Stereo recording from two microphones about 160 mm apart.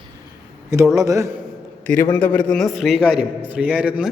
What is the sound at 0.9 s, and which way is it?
Speech, 20° right (ahead or behind).